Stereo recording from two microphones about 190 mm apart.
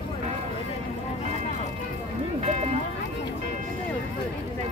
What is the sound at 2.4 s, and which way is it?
Music, 35° right (ahead or behind).